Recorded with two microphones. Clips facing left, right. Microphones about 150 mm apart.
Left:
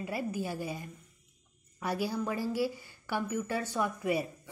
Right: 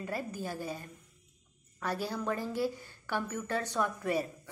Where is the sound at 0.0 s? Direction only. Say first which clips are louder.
Left 2 dB; 10° left (ahead or behind).